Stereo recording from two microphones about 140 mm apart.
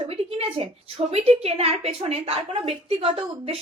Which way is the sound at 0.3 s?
45° right (ahead or behind).